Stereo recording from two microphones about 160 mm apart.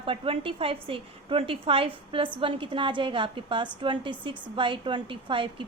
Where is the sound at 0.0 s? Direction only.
35° right (ahead or behind).